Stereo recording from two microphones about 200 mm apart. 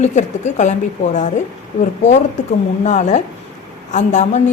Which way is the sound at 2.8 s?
35° left (ahead or behind).